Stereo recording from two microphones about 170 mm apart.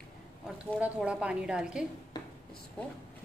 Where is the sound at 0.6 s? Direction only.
5° right (ahead or behind).